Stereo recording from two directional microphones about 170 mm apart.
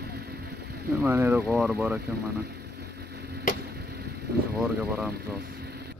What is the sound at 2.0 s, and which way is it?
Vehicle, 70° right (ahead or behind).